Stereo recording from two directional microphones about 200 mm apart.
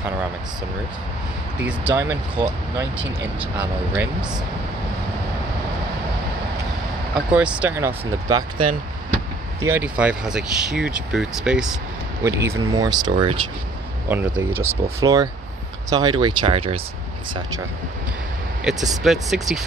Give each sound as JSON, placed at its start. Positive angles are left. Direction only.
{"t": 1.7, "sound": "speech", "side_deg": -10}
{"t": 7.2, "sound": "speech", "side_deg": -5}
{"t": 9.6, "sound": "speech", "side_deg": -10}
{"t": 12.2, "sound": "speech", "side_deg": -15}
{"t": 14.0, "sound": "speech", "side_deg": -10}
{"t": 18.6, "sound": "speech", "side_deg": 0}